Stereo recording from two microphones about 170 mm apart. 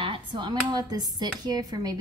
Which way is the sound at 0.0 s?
30° right (ahead or behind).